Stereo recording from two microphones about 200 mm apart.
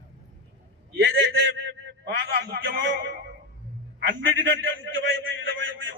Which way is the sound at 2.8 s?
60° right (ahead or behind).